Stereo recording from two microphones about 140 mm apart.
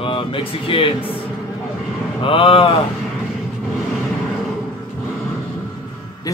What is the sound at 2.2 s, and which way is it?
Speech, 40° left (ahead or behind).